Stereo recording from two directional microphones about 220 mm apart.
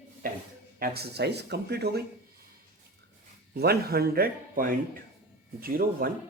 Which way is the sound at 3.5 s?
45° right (ahead or behind).